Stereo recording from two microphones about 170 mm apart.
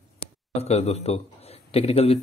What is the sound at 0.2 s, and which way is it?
A man's voice, 40° left (ahead or behind).